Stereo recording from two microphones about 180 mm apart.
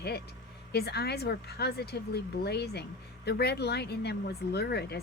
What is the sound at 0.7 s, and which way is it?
Speech, 65° left (ahead or behind).